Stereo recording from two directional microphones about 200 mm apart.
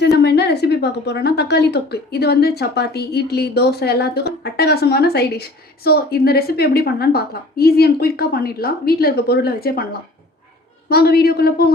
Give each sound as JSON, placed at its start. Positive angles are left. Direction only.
{"t": 0.0, "sound": "a woman's voice", "side_deg": 55}
{"t": 10.8, "sound": "a woman's voice", "side_deg": 50}